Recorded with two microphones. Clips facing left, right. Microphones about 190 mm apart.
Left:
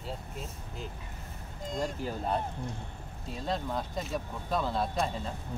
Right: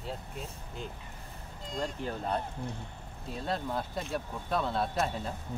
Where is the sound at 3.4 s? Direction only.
5° right (ahead or behind).